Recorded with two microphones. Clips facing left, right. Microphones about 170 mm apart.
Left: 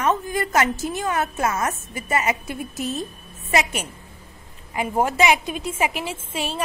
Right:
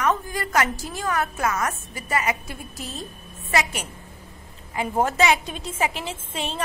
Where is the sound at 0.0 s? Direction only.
20° left (ahead or behind).